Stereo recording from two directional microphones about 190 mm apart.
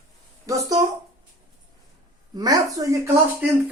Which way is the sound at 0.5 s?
15° right (ahead or behind).